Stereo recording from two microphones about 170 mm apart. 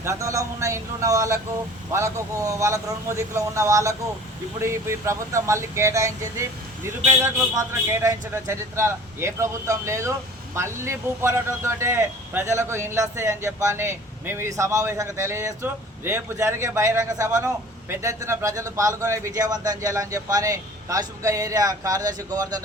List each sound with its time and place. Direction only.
0.0 s a man's voice: 15° right (ahead or behind)